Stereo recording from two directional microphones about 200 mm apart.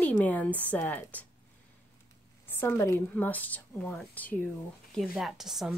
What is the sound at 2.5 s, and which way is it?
A woman's voice, 10° left (ahead or behind).